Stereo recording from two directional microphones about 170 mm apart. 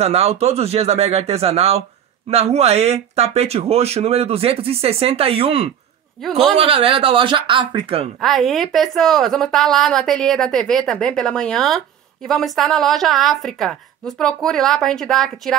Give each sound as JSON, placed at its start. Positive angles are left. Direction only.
{"t": 0.0, "sound": "speech", "side_deg": -40}
{"t": 6.2, "sound": "a woman's voice", "side_deg": 0}
{"t": 6.5, "sound": "speech", "side_deg": -35}
{"t": 8.2, "sound": "a woman's voice", "side_deg": 0}